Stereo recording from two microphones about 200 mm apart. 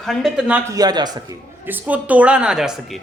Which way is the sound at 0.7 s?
20° right (ahead or behind).